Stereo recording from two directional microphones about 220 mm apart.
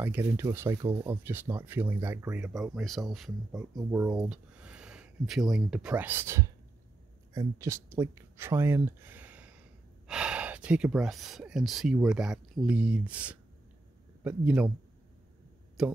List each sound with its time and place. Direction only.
0.0 s speech: 10° right (ahead or behind)
3.7 s speech: 15° right (ahead or behind)
15.8 s speech: centre (ahead or behind)